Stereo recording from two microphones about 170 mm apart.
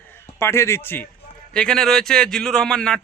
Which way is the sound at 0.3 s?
15° left (ahead or behind).